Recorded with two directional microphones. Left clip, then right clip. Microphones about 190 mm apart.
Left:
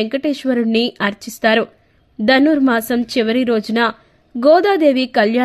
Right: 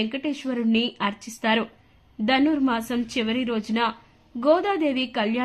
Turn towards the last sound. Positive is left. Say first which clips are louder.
# left 10 dB
turn(degrees=35)  # may be behind; listen again after turning